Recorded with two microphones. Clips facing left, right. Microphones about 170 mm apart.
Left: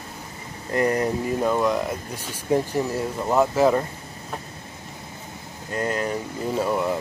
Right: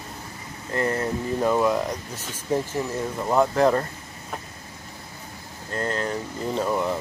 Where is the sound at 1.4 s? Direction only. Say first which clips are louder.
Right 2 dB; centre (ahead or behind).